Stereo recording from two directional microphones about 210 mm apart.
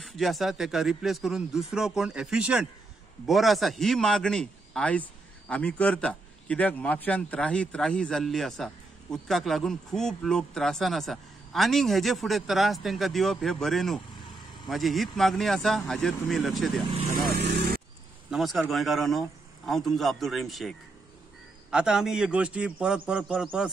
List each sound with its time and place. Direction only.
0.0 s a man's voice: centre (ahead or behind)
17.3 s speech: 50° right (ahead or behind)
18.3 s a man's voice: centre (ahead or behind)